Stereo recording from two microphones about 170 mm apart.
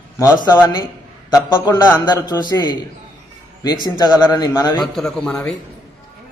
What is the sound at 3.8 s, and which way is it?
Speech, 25° left (ahead or behind).